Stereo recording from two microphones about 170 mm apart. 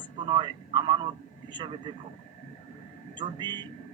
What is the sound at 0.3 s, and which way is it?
Speech, 25° right (ahead or behind).